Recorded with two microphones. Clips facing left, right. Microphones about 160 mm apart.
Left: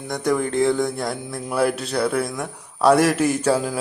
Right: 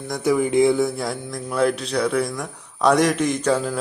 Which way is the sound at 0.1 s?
5° right (ahead or behind).